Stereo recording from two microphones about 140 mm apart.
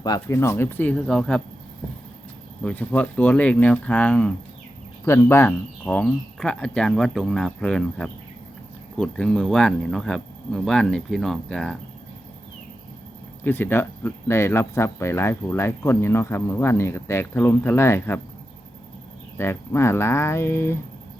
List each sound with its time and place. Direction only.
0.0 s speech: 25° left (ahead or behind); by 1.4 s 5° left (ahead or behind)
2.6 s speech: 10° left (ahead or behind)
13.4 s speech: 15° left (ahead or behind)
19.4 s speech: 20° left (ahead or behind)